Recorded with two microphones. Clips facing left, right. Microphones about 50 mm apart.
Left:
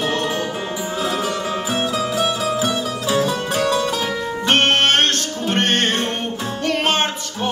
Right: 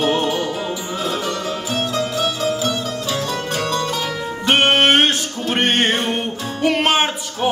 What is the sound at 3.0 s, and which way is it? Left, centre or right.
Music, centre.